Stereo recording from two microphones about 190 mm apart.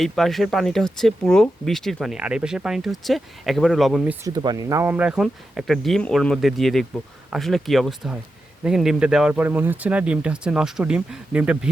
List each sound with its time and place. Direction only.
0.0 s speech: centre (ahead or behind)
4.3 s speech: 20° right (ahead or behind)